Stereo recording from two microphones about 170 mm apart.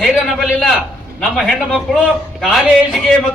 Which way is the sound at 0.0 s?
Centre (ahead or behind).